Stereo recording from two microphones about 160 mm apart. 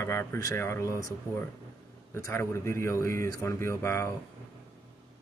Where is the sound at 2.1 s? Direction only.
15° left (ahead or behind).